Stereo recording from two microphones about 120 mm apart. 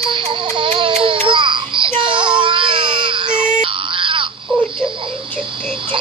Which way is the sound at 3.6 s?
45° right (ahead or behind).